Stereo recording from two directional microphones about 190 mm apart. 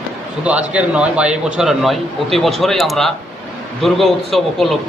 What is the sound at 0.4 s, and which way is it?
A man's voice, 5° right (ahead or behind).